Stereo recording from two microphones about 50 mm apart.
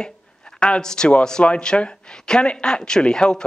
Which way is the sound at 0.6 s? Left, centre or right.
Centre.